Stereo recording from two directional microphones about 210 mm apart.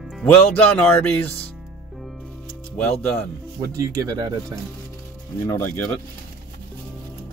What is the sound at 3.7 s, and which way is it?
Speech, 15° right (ahead or behind).